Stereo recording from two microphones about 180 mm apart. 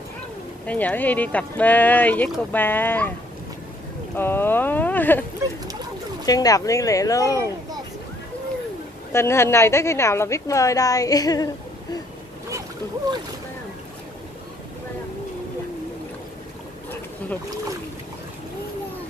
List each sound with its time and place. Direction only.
0.7 s speech: 10° left (ahead or behind)
4.2 s speech: 10° left (ahead or behind)
6.2 s speech: 20° left (ahead or behind)
9.1 s speech: 15° left (ahead or behind)